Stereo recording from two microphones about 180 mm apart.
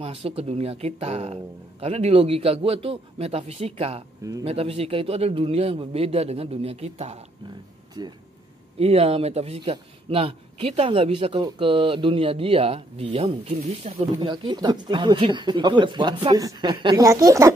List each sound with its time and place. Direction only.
0.0 s speech: 35° right (ahead or behind)
4.2 s speech: 20° right (ahead or behind)
4.5 s speech: 35° right (ahead or behind)
8.7 s speech: 35° right (ahead or behind)
14.1 s speech: 25° right (ahead or behind)